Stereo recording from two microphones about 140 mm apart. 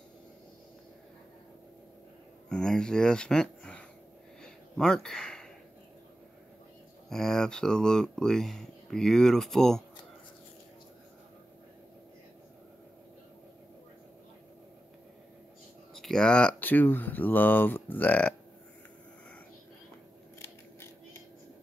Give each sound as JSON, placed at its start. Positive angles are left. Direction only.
{"t": 2.5, "sound": "speech", "side_deg": 5}
{"t": 4.4, "sound": "a sound", "side_deg": 5}
{"t": 7.1, "sound": "speech", "side_deg": 5}
{"t": 15.9, "sound": "speech", "side_deg": 5}
{"t": 20.3, "sound": "creak", "side_deg": 20}